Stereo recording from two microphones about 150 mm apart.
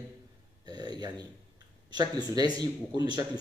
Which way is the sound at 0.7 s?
25° right (ahead or behind).